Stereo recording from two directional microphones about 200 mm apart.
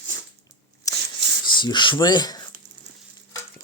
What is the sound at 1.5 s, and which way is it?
Speech, 25° left (ahead or behind).